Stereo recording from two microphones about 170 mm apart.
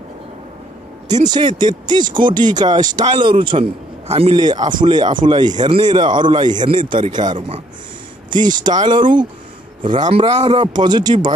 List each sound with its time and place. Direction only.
1.3 s speech: 25° right (ahead or behind)